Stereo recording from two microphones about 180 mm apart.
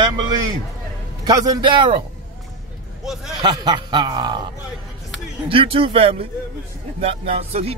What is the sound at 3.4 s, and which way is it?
Speech, 25° right (ahead or behind).